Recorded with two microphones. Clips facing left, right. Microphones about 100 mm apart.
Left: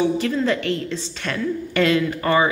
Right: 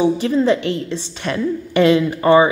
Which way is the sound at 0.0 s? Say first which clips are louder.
Right 4 dB; 20° right (ahead or behind).